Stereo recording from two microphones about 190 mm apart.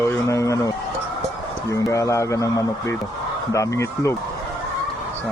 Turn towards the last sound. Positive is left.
turn(degrees=15)  # may be behind; listen again after turning